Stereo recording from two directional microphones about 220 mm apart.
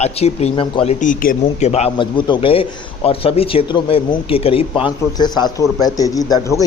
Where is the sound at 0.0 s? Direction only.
30° left (ahead or behind).